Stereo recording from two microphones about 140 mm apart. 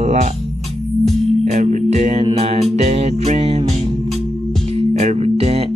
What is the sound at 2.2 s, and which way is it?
Speech, 45° right (ahead or behind).